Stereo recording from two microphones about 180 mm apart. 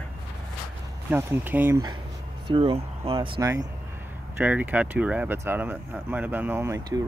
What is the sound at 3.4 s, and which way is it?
Speech, 20° right (ahead or behind).